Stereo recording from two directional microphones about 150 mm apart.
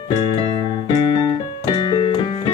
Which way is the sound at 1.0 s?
30° left (ahead or behind).